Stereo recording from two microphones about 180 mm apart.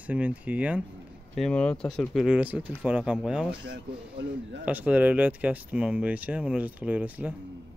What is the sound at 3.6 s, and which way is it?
Speech, 65° right (ahead or behind).